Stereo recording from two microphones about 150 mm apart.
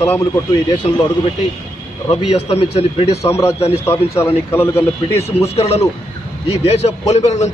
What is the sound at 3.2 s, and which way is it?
A man's voice, 20° left (ahead or behind).